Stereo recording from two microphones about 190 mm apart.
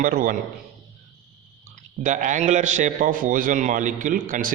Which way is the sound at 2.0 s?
40° right (ahead or behind).